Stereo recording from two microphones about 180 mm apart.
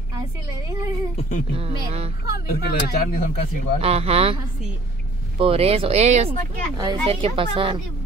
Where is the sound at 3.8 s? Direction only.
35° right (ahead or behind).